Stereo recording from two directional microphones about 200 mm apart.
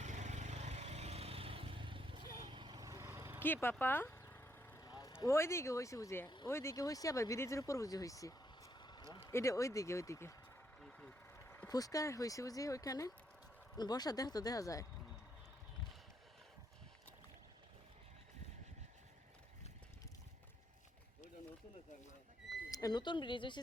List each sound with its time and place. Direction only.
0.0 s vehicle: 35° right (ahead or behind); by 3.4 s 10° right (ahead or behind)
3.4 s speech: 10° left (ahead or behind)
10.8 s vehicle: 5° left (ahead or behind)
13.7 s speech: 20° left (ahead or behind)
22.7 s speech: 20° left (ahead or behind)